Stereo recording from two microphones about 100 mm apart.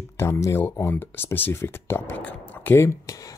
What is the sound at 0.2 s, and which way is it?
Speech, 25° left (ahead or behind).